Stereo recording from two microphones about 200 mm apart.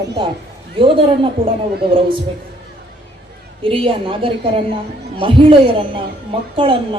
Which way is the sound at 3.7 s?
25° right (ahead or behind).